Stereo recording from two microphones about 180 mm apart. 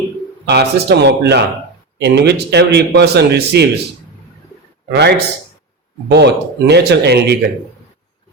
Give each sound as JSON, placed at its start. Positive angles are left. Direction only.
{"t": 0.4, "sound": "a man's voice", "side_deg": -70}
{"t": 4.9, "sound": "a man's voice", "side_deg": -70}